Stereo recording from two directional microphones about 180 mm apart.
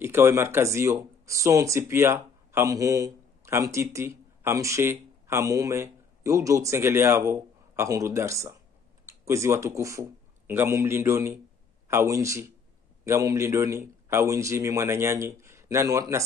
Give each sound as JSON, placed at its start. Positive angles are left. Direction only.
{"t": 0.0, "sound": "a man's voice", "side_deg": -15}